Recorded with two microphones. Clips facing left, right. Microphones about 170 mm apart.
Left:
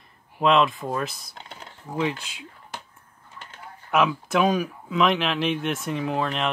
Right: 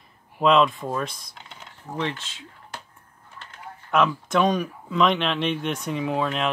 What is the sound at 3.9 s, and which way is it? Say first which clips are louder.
Speech: even; 5° left (ahead or behind).